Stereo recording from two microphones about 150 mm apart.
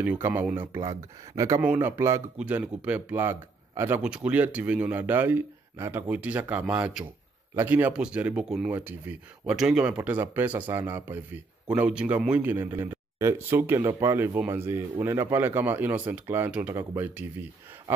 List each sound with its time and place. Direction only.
0.0 s speech: 10° right (ahead or behind)
1.6 s speech: 10° right (ahead or behind)